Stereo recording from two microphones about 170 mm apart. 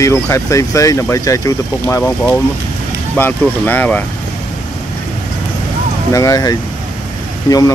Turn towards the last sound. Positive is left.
turn(degrees=20)  # may be behind; listen again after turning